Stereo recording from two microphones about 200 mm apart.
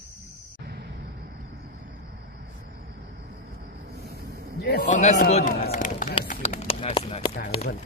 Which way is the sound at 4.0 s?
50° right (ahead or behind).